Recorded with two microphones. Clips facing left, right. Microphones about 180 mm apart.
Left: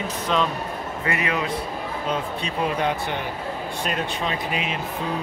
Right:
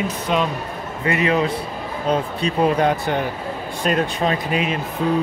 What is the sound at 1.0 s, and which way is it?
Speech, 25° right (ahead or behind).